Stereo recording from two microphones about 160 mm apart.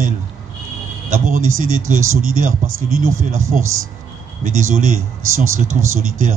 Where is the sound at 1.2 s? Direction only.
55° right (ahead or behind).